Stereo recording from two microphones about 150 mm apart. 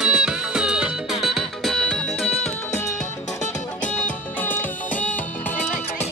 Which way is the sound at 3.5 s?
10° left (ahead or behind).